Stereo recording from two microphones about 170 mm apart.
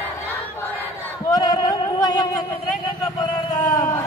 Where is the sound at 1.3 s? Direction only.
20° left (ahead or behind).